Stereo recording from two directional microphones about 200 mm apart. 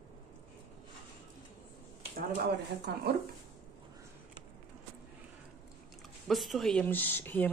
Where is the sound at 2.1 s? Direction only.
50° right (ahead or behind).